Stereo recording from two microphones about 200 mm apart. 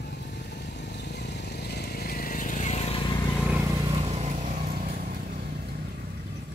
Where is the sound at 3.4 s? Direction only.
5° right (ahead or behind).